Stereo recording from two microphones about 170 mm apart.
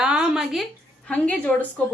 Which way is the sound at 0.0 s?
5° right (ahead or behind).